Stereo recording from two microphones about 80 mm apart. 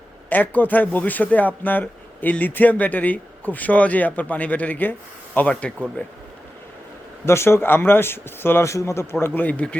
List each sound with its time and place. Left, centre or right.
0.3 s speech: left
7.3 s speech: left; by 9.7 s centre